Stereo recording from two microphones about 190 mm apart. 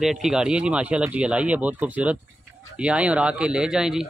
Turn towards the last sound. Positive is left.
turn(degrees=-5)  # may be behind; listen again after turning